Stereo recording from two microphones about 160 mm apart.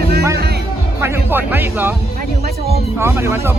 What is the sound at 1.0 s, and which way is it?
Speech, 10° right (ahead or behind).